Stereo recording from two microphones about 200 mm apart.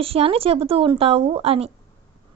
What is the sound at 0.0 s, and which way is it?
Speech, 30° right (ahead or behind).